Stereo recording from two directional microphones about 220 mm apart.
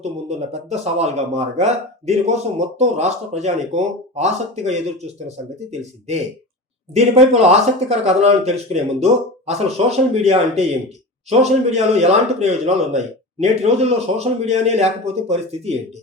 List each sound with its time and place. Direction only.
0.0 s speech: 30° right (ahead or behind)
6.9 s speech: 30° right (ahead or behind)